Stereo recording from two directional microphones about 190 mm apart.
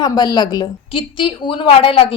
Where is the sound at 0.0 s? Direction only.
20° left (ahead or behind).